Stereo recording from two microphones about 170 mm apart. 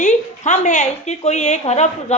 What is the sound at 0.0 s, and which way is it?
A woman's voice, 45° left (ahead or behind).